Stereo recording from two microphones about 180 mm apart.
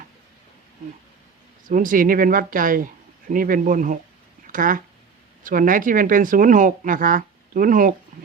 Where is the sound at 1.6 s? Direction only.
50° right (ahead or behind).